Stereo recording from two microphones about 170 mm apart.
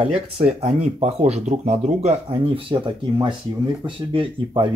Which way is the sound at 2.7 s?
30° right (ahead or behind).